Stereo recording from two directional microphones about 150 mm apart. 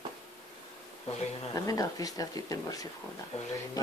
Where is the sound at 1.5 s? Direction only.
25° left (ahead or behind).